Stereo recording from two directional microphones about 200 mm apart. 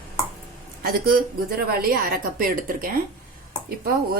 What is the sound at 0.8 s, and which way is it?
A woman's voice, 50° right (ahead or behind).